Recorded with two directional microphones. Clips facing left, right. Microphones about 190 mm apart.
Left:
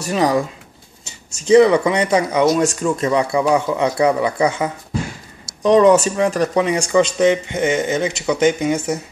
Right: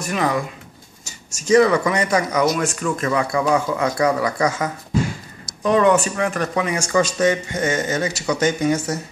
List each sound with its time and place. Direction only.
0.0 s speech: 35° left (ahead or behind)
1.5 s speech: 25° left (ahead or behind)
5.6 s speech: 30° left (ahead or behind)
6.9 s speech: 15° left (ahead or behind)